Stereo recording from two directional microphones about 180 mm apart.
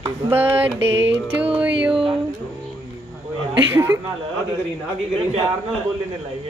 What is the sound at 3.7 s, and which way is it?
Speech, 15° right (ahead or behind).